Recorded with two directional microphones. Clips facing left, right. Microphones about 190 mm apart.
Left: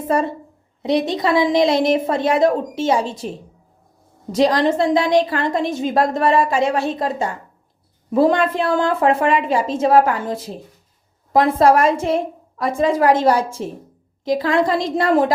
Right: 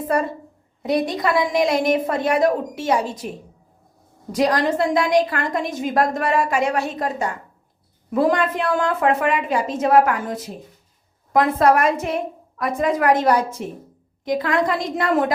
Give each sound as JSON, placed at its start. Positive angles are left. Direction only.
{"t": 0.8, "sound": "a woman's voice", "side_deg": 25}